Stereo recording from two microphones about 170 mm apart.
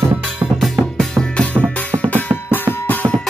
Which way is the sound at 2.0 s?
10° left (ahead or behind).